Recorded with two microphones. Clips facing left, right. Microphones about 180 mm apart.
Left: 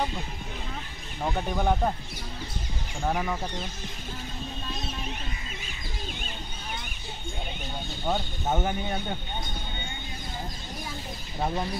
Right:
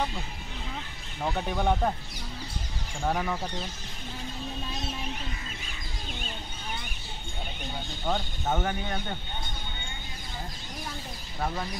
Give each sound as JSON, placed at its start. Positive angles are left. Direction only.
{"t": 1.2, "sound": "speech", "side_deg": 5}
{"t": 3.0, "sound": "speech", "side_deg": 5}
{"t": 8.1, "sound": "speech", "side_deg": 10}
{"t": 11.3, "sound": "speech", "side_deg": 20}